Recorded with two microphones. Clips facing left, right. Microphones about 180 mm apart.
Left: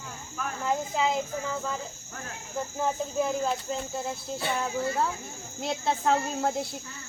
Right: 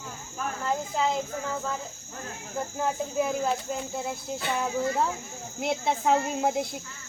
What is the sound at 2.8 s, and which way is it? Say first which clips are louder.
Speech: even; 5° right (ahead or behind).